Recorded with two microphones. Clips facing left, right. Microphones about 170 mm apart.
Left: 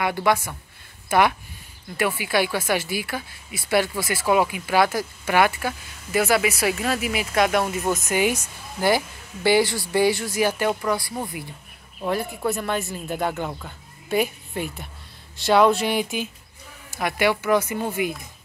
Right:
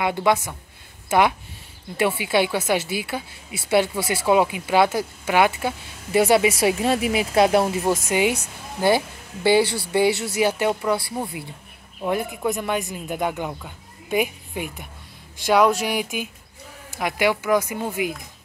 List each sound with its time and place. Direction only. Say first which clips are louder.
0.0 s speech: right 1 dB; 20° right (ahead or behind)
1.0 s a sound: right 1 dB; 20° right (ahead or behind)
2.0 s speech: right 2 dB; 25° right (ahead or behind)
6.1 s speech: right 4 dB; 30° right (ahead or behind); by 13.5 s 15° right (ahead or behind)
13.5 s music: even; 5° right (ahead or behind)
14.1 s a woman's voice: even; 10° right (ahead or behind)
15.5 s music: left 1 dB; 5° right (ahead or behind)
16.9 s speech: even; 15° right (ahead or behind)